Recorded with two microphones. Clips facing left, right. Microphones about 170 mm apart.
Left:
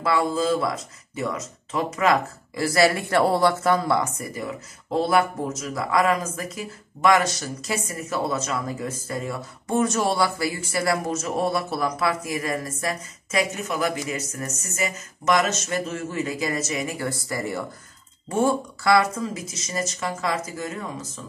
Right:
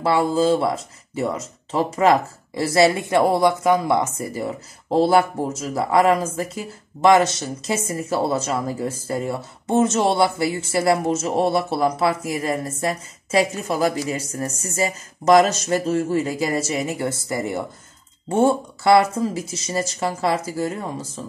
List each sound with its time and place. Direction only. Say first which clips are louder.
0.0 s speech: right 4 dB; 30° right (ahead or behind)